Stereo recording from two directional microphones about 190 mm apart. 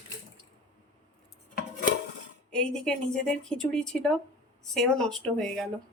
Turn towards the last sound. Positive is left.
turn(degrees=5)  # may be behind; listen again after turning